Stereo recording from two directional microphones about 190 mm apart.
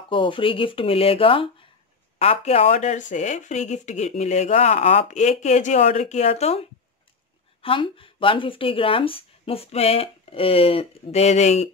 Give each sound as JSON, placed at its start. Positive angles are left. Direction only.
{"t": 0.1, "sound": "a woman's voice", "side_deg": 25}
{"t": 7.6, "sound": "speech", "side_deg": 25}